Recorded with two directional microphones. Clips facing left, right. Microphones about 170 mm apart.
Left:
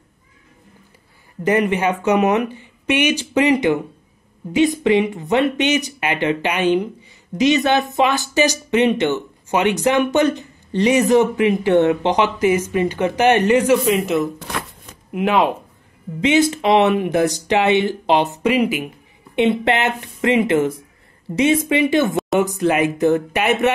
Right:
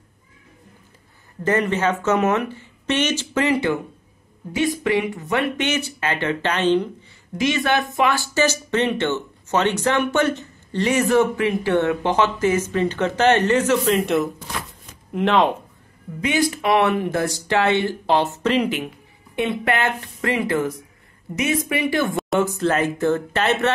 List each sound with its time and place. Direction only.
1.4 s speech: 15° left (ahead or behind)
16.2 s speech: 25° left (ahead or behind)
19.3 s speech: 20° left (ahead or behind)